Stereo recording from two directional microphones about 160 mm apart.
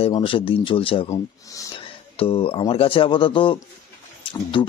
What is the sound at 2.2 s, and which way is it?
Speech, 35° left (ahead or behind).